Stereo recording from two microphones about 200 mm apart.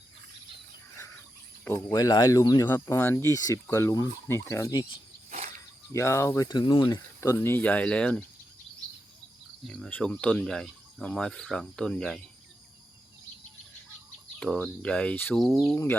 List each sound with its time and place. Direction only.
1.6 s speech: 15° left (ahead or behind)
9.6 s speech: centre (ahead or behind)
14.3 s speech: 5° left (ahead or behind)